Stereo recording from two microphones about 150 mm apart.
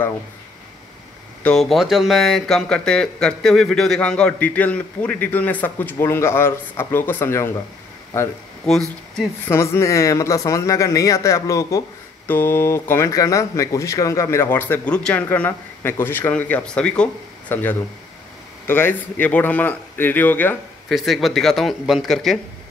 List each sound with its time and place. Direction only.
1.4 s speech: 5° left (ahead or behind)
9.5 s speech: 20° left (ahead or behind)
20.9 s speech: centre (ahead or behind)